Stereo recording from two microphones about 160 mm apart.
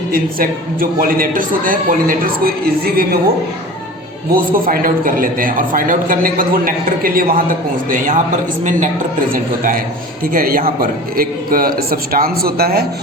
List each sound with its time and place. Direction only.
0.1 s a man's voice: 65° right (ahead or behind)
4.3 s a man's voice: 65° right (ahead or behind)
9.3 s a man's voice: 60° right (ahead or behind)